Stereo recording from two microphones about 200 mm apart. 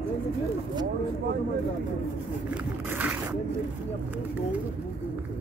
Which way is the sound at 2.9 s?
10° right (ahead or behind).